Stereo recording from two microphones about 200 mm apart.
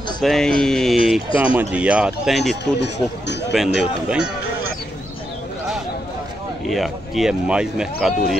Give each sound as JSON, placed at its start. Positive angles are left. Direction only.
{"t": 0.2, "sound": "speech", "side_deg": 0}
{"t": 2.6, "sound": "speech", "side_deg": 60}
{"t": 3.5, "sound": "speech", "side_deg": 0}
{"t": 6.6, "sound": "speech", "side_deg": 0}